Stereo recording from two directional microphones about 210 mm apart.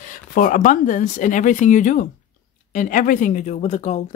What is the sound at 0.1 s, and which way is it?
Speech, 40° left (ahead or behind).